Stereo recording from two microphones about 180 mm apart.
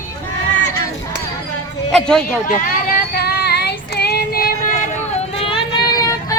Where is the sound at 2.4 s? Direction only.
55° left (ahead or behind).